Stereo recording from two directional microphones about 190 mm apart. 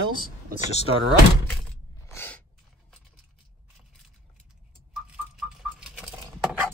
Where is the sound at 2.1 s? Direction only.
10° left (ahead or behind).